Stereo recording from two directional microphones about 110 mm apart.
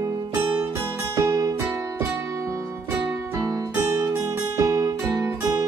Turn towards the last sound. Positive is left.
turn(degrees=-35)  # may be behind; listen again after turning